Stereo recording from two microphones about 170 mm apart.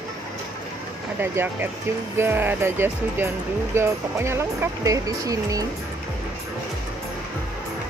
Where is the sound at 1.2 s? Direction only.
15° right (ahead or behind).